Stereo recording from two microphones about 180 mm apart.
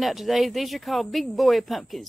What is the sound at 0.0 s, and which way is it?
Speech, centre (ahead or behind).